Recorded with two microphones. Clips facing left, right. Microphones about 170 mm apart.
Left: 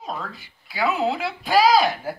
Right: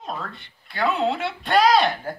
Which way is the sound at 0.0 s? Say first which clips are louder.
Even; centre (ahead or behind).